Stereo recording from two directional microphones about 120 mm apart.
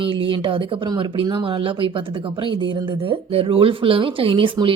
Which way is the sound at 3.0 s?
50° right (ahead or behind).